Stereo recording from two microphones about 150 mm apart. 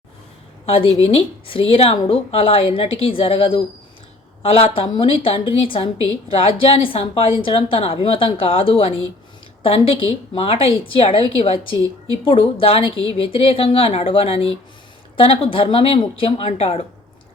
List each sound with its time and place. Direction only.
0.6 s a woman's voice: 40° left (ahead or behind)
10.3 s a woman's voice: 40° left (ahead or behind)